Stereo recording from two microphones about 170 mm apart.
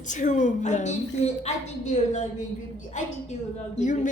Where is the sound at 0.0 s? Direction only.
45° left (ahead or behind).